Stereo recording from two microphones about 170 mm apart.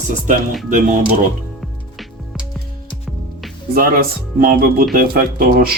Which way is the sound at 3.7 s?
60° right (ahead or behind).